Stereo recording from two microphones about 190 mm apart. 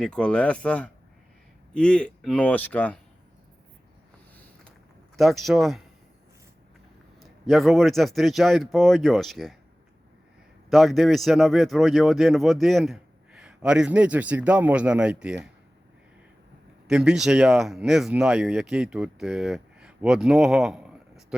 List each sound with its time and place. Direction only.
0.0 s speech: 5° left (ahead or behind)
5.1 s speech: centre (ahead or behind)
7.2 s speech: centre (ahead or behind)
10.7 s speech: centre (ahead or behind)
16.9 s speech: 5° right (ahead or behind)